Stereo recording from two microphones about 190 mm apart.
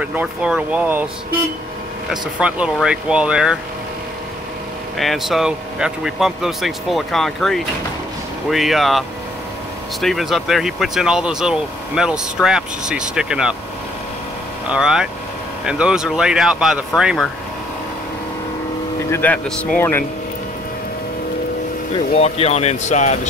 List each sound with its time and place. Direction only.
0.0 s speech: 10° right (ahead or behind)
2.0 s speech: 5° right (ahead or behind)
4.9 s speech: centre (ahead or behind)
10.0 s speech: centre (ahead or behind)
14.7 s speech: 5° right (ahead or behind)
19.0 s speech: 10° left (ahead or behind)
22.1 s speech: 35° left (ahead or behind)